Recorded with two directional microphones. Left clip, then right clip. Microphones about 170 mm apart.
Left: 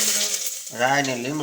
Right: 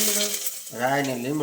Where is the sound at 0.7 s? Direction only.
15° left (ahead or behind).